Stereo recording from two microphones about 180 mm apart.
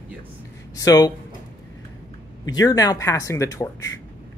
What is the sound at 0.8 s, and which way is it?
Speech, 20° left (ahead or behind).